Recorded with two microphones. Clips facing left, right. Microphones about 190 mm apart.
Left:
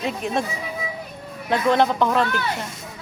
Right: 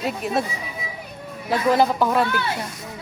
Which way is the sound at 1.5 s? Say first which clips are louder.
Even; 5° right (ahead or behind).